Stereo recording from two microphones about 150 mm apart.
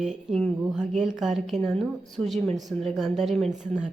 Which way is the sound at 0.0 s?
Centre (ahead or behind).